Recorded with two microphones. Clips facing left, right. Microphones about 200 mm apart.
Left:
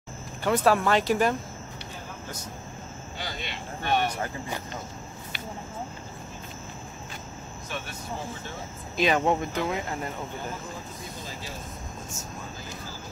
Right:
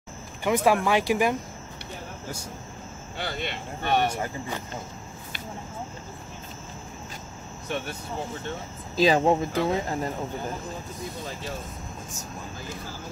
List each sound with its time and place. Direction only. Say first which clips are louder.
0.4 s speech: right 1 dB; 15° right (ahead or behind)
3.2 s speech: right 5 dB; 55° right (ahead or behind)
8.9 s speech: right 3 dB; 30° right (ahead or behind)